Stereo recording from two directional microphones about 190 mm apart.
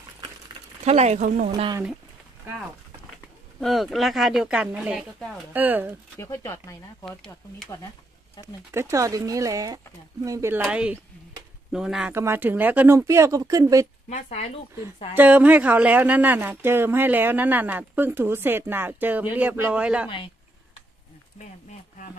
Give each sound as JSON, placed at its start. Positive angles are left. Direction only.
{"t": 0.8, "sound": "speech", "side_deg": -35}
{"t": 1.5, "sound": "speech", "side_deg": -20}
{"t": 3.6, "sound": "speech", "side_deg": 0}
{"t": 6.1, "sound": "speech", "side_deg": 15}
{"t": 7.1, "sound": "speech", "side_deg": 5}
{"t": 8.4, "sound": "speech", "side_deg": 20}
{"t": 8.7, "sound": "speech", "side_deg": -15}
{"t": 14.0, "sound": "speech", "side_deg": 35}
{"t": 15.1, "sound": "speech", "side_deg": -5}